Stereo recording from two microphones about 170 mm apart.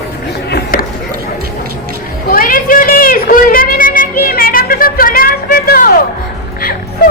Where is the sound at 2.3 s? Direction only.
55° left (ahead or behind).